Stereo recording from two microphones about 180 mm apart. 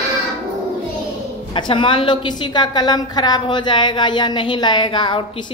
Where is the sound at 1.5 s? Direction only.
25° left (ahead or behind).